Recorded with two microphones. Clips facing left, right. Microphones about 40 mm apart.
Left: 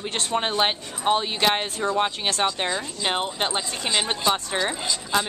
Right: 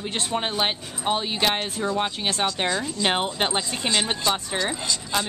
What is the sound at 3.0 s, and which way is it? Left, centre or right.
Speech, centre.